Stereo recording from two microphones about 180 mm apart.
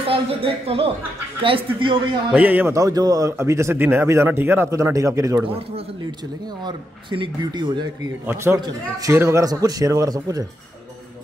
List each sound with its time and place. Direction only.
0.0 s a woman's voice: 30° right (ahead or behind)
2.3 s speech: 10° right (ahead or behind)
6.6 s a man's voice: 25° right (ahead or behind)